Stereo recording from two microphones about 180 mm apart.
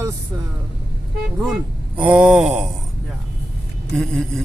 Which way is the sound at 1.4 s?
5° right (ahead or behind).